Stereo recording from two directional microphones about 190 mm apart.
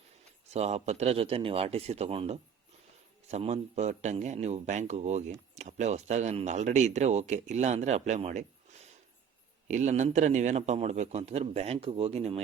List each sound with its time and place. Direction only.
0.5 s speech: 35° right (ahead or behind)
9.6 s speech: 40° right (ahead or behind)